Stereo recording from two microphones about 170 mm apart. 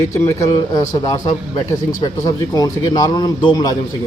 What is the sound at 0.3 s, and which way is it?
Speech, 20° left (ahead or behind).